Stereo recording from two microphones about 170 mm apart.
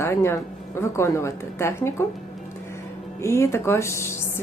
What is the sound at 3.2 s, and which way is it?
A woman's voice, 15° left (ahead or behind).